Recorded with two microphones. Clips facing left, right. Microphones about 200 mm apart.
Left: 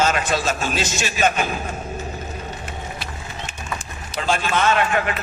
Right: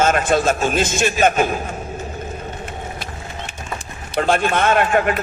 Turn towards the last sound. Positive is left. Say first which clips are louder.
# right 4 dB
turn(degrees=-50)  # may be behind; listen again after turning